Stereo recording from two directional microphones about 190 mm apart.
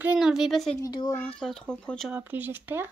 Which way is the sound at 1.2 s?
5° left (ahead or behind).